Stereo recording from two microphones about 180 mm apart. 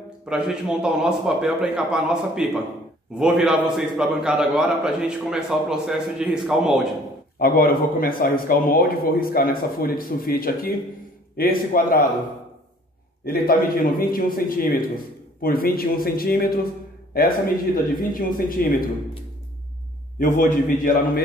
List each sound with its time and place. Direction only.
0.2 s a man's voice: 5° right (ahead or behind)
7.3 s a man's voice: 55° left (ahead or behind)
13.2 s a man's voice: 55° left (ahead or behind)
17.8 s a man's voice: 55° left (ahead or behind)
20.2 s a man's voice: 45° left (ahead or behind)